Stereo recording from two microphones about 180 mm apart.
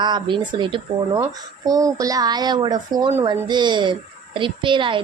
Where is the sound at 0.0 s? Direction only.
25° right (ahead or behind).